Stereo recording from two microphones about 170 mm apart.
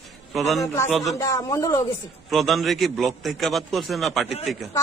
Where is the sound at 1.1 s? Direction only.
20° left (ahead or behind).